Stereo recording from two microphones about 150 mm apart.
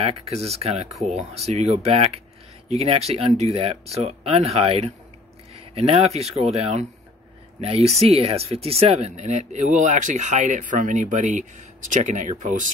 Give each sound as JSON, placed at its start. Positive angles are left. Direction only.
{"t": 0.0, "sound": "speech", "side_deg": -45}